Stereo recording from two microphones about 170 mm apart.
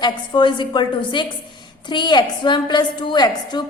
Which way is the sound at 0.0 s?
25° left (ahead or behind).